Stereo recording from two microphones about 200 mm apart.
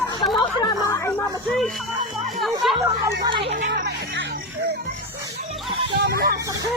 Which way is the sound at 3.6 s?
45° right (ahead or behind).